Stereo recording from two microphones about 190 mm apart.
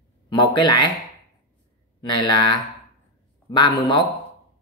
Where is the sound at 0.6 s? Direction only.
25° left (ahead or behind).